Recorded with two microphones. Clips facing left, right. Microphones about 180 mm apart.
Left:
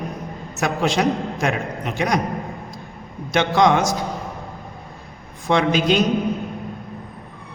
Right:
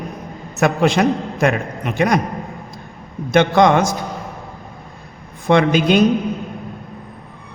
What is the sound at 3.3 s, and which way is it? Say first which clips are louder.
Speech: right 4 dB; 55° right (ahead or behind).